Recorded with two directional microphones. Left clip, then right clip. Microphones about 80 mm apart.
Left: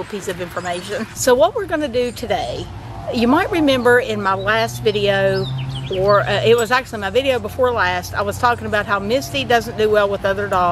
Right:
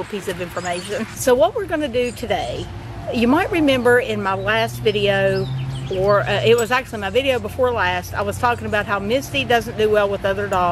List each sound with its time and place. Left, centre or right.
0.3 s speech: centre
5.4 s chicken: left
6.1 s speech: centre